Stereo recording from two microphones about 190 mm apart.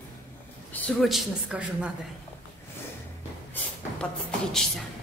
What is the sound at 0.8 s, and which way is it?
Speech, centre (ahead or behind).